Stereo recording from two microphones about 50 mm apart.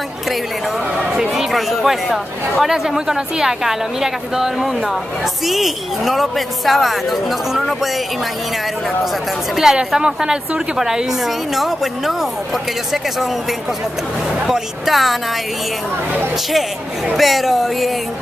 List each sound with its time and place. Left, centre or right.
1.3 s a woman's voice: centre
9.6 s a woman's voice: centre
14.4 s speech: centre
17.2 s speech: centre